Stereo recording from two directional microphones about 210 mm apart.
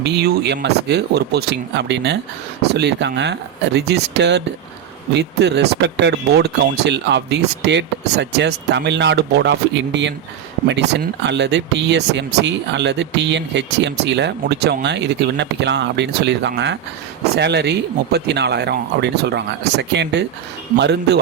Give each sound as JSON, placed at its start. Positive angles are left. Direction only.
{"t": 0.0, "sound": "speech", "side_deg": -50}
{"t": 11.3, "sound": "speech", "side_deg": -55}